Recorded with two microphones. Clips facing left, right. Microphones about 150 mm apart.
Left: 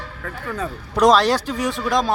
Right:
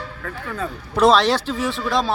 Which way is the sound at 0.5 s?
10° left (ahead or behind).